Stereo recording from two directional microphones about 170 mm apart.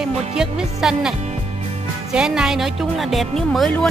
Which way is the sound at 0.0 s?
5° right (ahead or behind).